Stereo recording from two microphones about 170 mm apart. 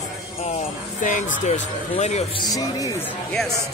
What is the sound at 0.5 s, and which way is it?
Speech, 50° left (ahead or behind).